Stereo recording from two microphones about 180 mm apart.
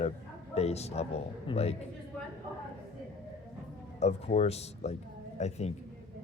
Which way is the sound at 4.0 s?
40° left (ahead or behind).